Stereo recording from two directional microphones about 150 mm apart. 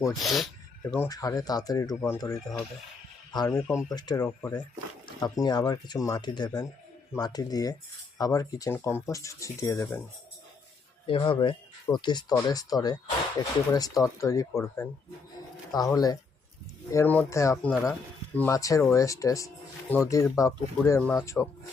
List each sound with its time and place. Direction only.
0.1 s speech: centre (ahead or behind)
0.9 s speech: 20° left (ahead or behind)
11.0 s speech: 35° left (ahead or behind)
16.9 s speech: 15° left (ahead or behind)
17.6 s speech: 10° left (ahead or behind)